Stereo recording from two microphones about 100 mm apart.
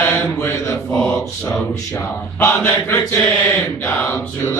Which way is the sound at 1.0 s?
5° left (ahead or behind).